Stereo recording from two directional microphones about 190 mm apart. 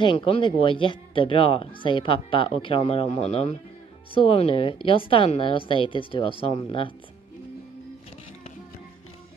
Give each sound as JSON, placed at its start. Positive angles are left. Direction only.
{"t": 0.0, "sound": "speech", "side_deg": 25}